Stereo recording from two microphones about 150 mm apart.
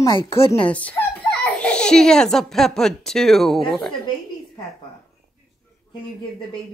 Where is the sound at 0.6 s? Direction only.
10° left (ahead or behind).